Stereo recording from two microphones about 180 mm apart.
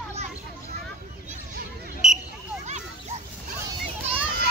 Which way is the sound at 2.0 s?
Centre (ahead or behind).